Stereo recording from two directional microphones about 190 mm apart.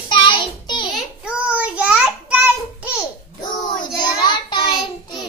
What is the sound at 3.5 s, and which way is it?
Child singing, 20° left (ahead or behind).